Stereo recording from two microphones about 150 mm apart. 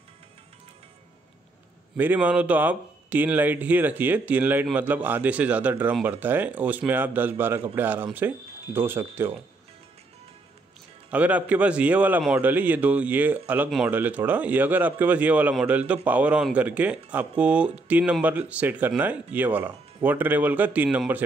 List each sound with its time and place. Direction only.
2.0 s a man's voice: 10° right (ahead or behind)
11.1 s a man's voice: 10° right (ahead or behind)